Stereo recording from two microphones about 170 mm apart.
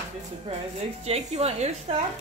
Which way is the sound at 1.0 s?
40° right (ahead or behind).